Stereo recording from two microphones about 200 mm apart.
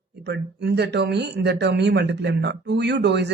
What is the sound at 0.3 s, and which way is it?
Speech, 55° right (ahead or behind).